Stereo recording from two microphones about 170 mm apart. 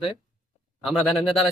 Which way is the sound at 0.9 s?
Centre (ahead or behind).